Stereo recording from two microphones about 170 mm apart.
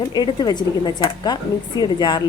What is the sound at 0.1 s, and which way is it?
Speech, 25° left (ahead or behind).